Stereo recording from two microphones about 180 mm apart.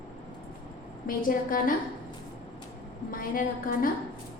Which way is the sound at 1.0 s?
50° left (ahead or behind).